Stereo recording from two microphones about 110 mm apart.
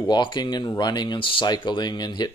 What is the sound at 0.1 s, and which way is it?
Speech, 45° left (ahead or behind).